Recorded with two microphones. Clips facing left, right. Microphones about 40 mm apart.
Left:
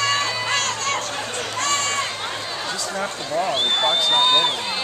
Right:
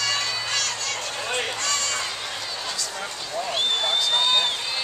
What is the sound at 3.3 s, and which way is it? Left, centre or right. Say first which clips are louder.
Speech: left 4 dB; left.